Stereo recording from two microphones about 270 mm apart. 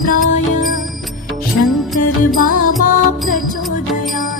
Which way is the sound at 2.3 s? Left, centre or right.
Left.